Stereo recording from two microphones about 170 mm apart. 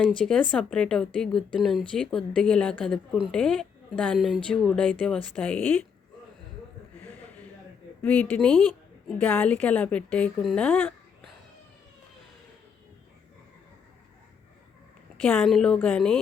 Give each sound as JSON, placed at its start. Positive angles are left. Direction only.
{"t": 0.2, "sound": "a woman's voice", "side_deg": 5}
{"t": 8.0, "sound": "a woman's voice", "side_deg": 10}
{"t": 15.2, "sound": "a woman's voice", "side_deg": 10}